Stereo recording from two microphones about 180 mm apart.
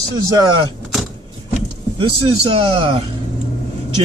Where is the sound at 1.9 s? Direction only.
30° right (ahead or behind).